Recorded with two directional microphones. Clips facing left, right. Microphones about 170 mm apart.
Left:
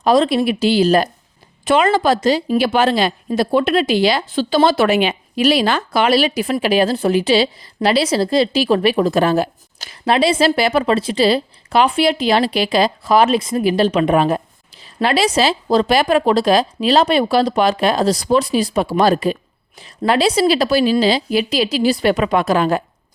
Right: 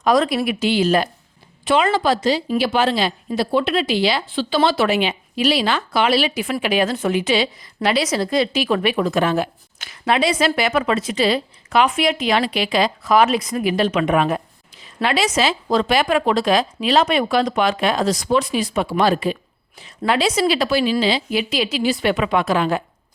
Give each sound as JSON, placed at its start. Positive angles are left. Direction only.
{"t": 0.0, "sound": "speech", "side_deg": 25}
{"t": 1.6, "sound": "speech", "side_deg": 50}